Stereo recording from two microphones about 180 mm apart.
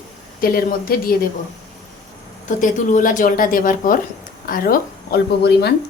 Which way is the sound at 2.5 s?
45° left (ahead or behind).